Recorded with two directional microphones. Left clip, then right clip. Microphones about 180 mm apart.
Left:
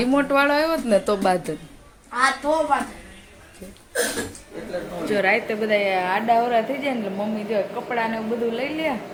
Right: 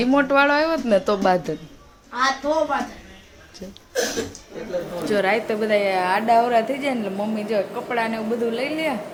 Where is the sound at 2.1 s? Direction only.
5° left (ahead or behind).